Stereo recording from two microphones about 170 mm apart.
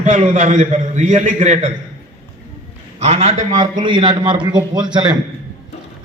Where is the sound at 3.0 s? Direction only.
40° right (ahead or behind).